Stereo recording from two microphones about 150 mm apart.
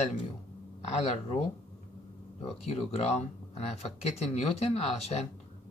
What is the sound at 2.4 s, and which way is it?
Speech, 45° left (ahead or behind).